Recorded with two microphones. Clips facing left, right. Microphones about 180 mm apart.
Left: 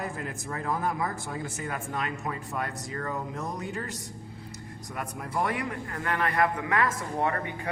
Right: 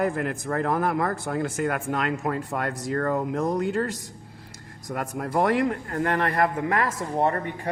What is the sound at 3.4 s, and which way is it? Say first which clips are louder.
Speech: right 10 dB; 75° right (ahead or behind).